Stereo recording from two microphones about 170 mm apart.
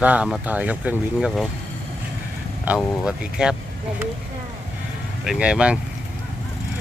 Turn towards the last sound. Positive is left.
turn(degrees=-5)  # may be behind; listen again after turning